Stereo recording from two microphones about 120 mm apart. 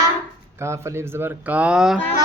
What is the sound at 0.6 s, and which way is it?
Speech, 25° right (ahead or behind).